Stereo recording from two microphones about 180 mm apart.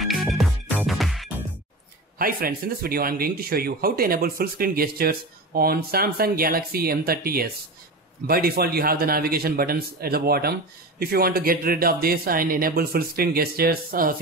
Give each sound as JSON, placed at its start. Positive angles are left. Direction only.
{"t": 0.0, "sound": "music", "side_deg": 0}
{"t": 2.1, "sound": "a man's voice", "side_deg": -55}